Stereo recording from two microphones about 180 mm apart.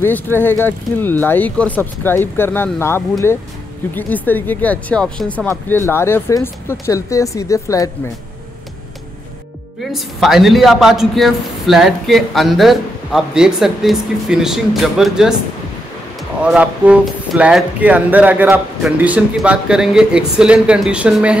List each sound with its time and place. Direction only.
0.0 s speech: 10° left (ahead or behind)
9.9 s a man's voice: centre (ahead or behind)
16.4 s a man's voice: 5° right (ahead or behind)